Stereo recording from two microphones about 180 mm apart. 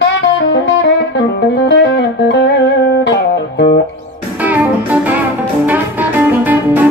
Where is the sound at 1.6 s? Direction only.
75° left (ahead or behind).